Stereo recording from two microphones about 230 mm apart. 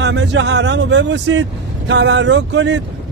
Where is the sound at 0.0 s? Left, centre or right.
Right.